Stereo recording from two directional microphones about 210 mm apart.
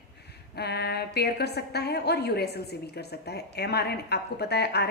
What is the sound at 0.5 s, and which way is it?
A woman's voice, 50° left (ahead or behind).